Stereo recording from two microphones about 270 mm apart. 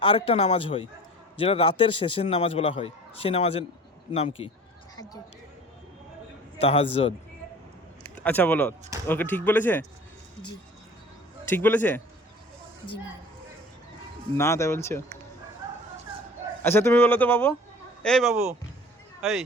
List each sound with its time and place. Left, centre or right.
0.0 s a man's voice: centre
6.6 s a man's voice: left
8.0 s speech: centre
11.5 s speech: centre
14.3 s speech: centre
16.6 s speech: centre